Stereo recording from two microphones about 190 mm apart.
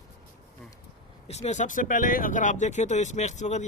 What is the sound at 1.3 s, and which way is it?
Speech, 35° left (ahead or behind).